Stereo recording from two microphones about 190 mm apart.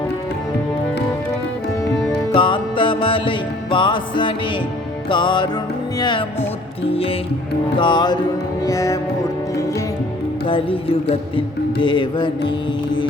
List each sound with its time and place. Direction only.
1.9 s music: 25° left (ahead or behind)
10.4 s music: 30° left (ahead or behind)